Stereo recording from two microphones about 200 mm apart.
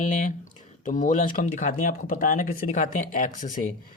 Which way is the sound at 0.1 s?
40° left (ahead or behind).